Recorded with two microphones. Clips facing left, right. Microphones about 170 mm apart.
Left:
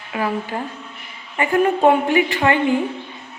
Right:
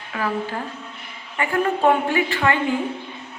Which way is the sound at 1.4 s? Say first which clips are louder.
Left 4 dB; 20° left (ahead or behind).